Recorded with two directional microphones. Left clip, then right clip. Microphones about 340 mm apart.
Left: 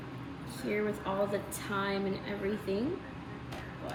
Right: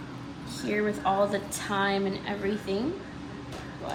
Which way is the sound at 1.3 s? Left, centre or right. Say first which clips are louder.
Right 5 dB; centre.